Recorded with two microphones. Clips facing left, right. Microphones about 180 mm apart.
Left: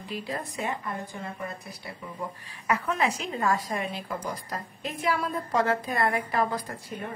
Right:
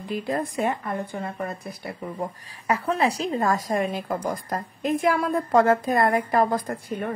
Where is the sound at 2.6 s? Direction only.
35° right (ahead or behind).